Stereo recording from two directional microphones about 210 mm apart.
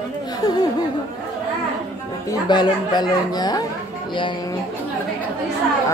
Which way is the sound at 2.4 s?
20° left (ahead or behind).